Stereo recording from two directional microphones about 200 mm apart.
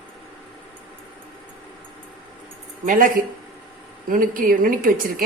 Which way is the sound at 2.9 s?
45° right (ahead or behind).